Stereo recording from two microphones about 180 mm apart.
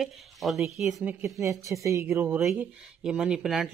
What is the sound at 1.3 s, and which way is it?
Speech, 15° right (ahead or behind).